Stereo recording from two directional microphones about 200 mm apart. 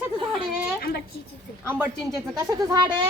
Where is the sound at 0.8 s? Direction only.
50° left (ahead or behind).